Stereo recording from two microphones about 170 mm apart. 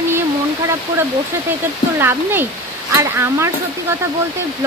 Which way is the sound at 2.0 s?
10° right (ahead or behind).